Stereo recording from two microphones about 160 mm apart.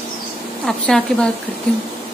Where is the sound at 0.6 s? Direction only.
5° left (ahead or behind).